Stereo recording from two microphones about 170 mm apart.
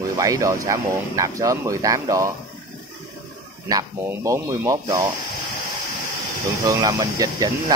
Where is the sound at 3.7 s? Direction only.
20° right (ahead or behind).